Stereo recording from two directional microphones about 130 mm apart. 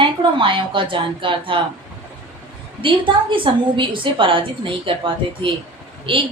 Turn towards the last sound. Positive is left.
turn(degrees=-40)  # may be behind; listen again after turning